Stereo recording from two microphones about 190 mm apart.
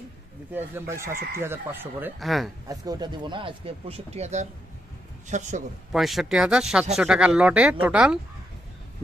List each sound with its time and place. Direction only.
0.5 s speech: 10° right (ahead or behind)
2.1 s speech: centre (ahead or behind)
2.7 s speech: 20° right (ahead or behind); by 5.5 s 40° right (ahead or behind)
5.9 s speech: centre (ahead or behind)